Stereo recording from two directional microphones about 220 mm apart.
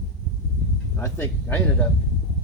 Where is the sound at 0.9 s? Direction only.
10° left (ahead or behind).